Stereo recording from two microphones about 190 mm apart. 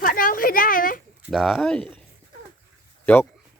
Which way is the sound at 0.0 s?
45° left (ahead or behind).